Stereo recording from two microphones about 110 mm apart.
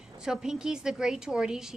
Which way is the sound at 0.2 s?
5° right (ahead or behind).